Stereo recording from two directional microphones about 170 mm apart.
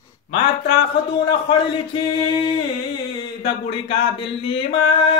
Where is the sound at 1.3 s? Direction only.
25° left (ahead or behind).